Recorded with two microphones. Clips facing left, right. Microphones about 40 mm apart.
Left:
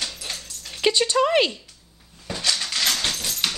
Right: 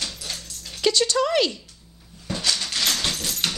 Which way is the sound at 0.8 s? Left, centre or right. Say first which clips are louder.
Left 1 dB; left.